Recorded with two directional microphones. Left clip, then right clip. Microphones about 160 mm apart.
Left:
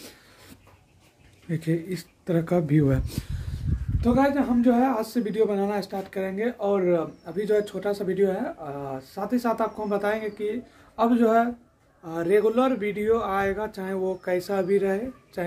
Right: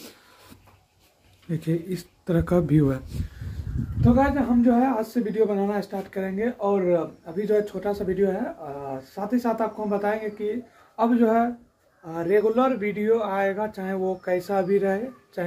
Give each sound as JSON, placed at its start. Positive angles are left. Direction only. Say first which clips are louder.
{"t": 1.5, "sound": "speech", "louder": "even", "side_deg": 0}
{"t": 4.0, "sound": "speech", "louder": "right 1 dB", "side_deg": 10}